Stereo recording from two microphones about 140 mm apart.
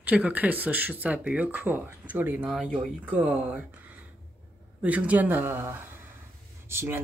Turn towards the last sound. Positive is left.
turn(degrees=-15)  # may be behind; listen again after turning